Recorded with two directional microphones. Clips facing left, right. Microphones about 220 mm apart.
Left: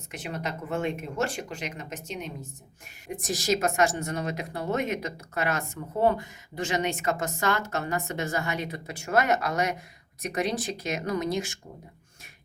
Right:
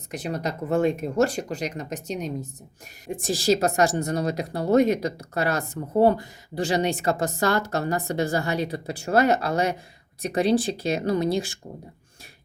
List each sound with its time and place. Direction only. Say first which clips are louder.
0.1 s a woman's voice: right 5 dB; 35° right (ahead or behind)